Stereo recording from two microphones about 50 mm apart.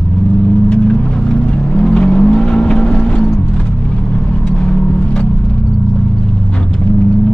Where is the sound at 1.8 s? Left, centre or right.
Left.